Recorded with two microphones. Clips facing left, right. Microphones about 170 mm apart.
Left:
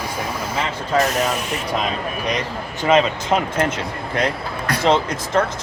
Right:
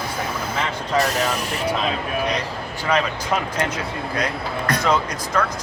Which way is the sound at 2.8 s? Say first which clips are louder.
Left 5 dB; 25° left (ahead or behind).